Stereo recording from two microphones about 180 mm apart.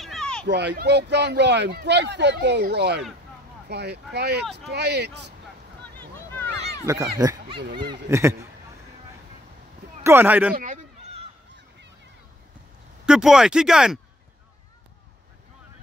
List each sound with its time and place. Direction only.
0.0 s a sound: centre (ahead or behind)
0.5 s speech: 70° right (ahead or behind)
6.9 s speech: 20° right (ahead or behind)
10.0 s speech: 10° right (ahead or behind)
10.5 s a sound: 45° right (ahead or behind)
13.0 s speech: 5° right (ahead or behind)